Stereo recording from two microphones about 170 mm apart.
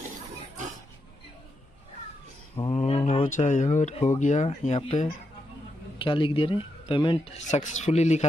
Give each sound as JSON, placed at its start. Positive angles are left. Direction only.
{"t": 2.5, "sound": "speech", "side_deg": 35}
{"t": 7.3, "sound": "speech", "side_deg": 45}